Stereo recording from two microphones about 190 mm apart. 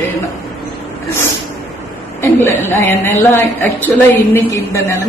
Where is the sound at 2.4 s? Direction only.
10° left (ahead or behind).